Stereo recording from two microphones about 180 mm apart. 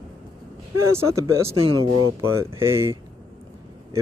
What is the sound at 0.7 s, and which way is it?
Speech, 15° right (ahead or behind).